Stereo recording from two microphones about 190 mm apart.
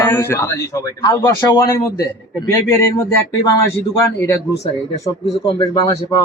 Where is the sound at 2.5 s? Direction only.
15° left (ahead or behind).